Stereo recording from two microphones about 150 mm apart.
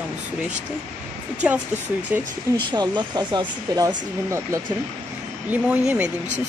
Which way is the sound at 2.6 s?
30° right (ahead or behind).